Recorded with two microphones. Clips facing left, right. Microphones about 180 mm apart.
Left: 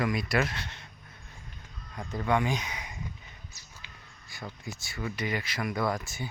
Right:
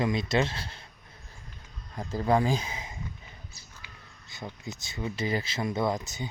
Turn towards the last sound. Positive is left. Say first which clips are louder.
# right 2 dB
turn(degrees=-20)  # may be behind; listen again after turning